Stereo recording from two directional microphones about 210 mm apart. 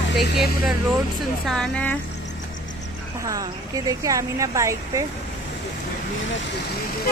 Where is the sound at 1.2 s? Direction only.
Centre (ahead or behind).